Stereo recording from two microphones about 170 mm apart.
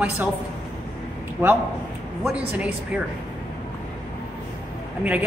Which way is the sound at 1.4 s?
15° right (ahead or behind).